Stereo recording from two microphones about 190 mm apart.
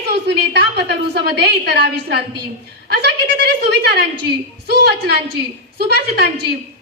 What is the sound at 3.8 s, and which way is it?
A woman's voice, 60° right (ahead or behind).